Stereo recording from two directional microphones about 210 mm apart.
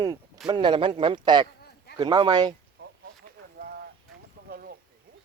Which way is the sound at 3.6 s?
50° right (ahead or behind).